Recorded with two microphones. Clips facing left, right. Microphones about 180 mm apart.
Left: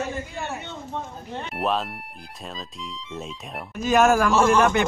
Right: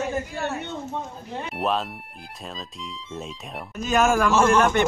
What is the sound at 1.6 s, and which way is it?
Speech, centre (ahead or behind).